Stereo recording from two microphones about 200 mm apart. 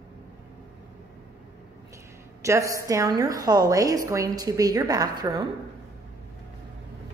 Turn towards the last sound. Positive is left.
turn(degrees=-20)  # may be behind; listen again after turning